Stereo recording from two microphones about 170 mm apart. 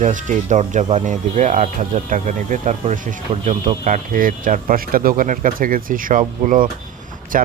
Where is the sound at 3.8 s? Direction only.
50° right (ahead or behind).